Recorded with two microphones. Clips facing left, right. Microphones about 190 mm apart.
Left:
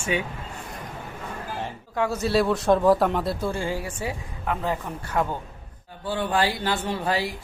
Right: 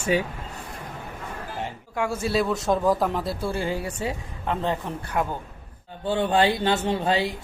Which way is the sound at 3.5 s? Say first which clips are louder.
Right 1 dB; 20° right (ahead or behind).